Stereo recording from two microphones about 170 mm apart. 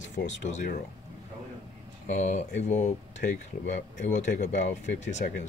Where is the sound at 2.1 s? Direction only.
45° left (ahead or behind).